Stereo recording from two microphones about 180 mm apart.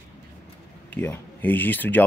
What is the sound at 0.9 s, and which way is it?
Speech, 10° left (ahead or behind).